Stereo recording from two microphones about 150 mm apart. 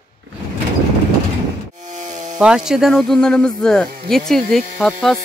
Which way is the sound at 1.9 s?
55° right (ahead or behind).